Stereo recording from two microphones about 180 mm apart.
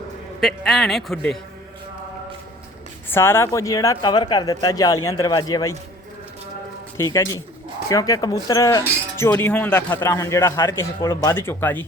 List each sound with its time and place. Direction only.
0.3 s a man's voice: centre (ahead or behind)
3.1 s a man's voice: 15° left (ahead or behind)
6.9 s a man's voice: 20° left (ahead or behind)